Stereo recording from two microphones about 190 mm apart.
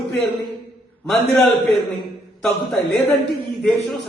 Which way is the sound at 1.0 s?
Centre (ahead or behind).